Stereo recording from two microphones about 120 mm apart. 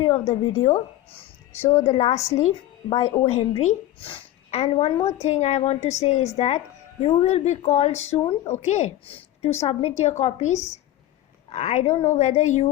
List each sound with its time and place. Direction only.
0.0 s a woman's voice: 50° left (ahead or behind)
1.5 s a woman's voice: 25° left (ahead or behind)
1.9 s a woman's voice: 55° left (ahead or behind)
5.2 s a woman's voice: 65° left (ahead or behind)